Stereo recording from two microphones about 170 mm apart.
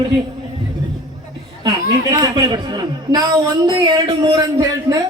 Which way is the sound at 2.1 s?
25° right (ahead or behind).